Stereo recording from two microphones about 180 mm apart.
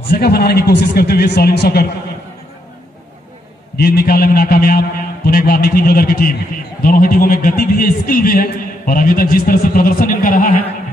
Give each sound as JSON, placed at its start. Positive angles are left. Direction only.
{"t": 0.2, "sound": "a man's voice", "side_deg": 60}
{"t": 3.7, "sound": "a man's voice", "side_deg": 60}